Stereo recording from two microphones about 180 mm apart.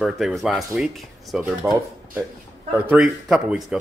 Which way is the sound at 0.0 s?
Centre (ahead or behind).